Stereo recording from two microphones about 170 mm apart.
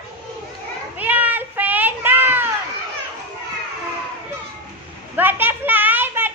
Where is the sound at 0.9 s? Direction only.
10° right (ahead or behind).